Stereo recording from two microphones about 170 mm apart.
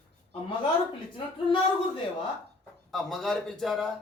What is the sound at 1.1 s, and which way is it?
Speech, 30° left (ahead or behind).